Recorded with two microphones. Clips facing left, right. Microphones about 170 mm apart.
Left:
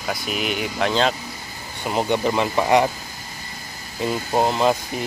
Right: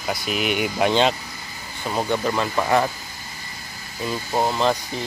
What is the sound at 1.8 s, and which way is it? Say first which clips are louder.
Speech: left 2 dB; 20° left (ahead or behind).